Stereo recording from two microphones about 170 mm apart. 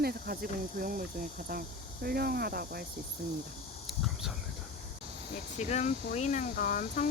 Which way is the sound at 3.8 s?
Centre (ahead or behind).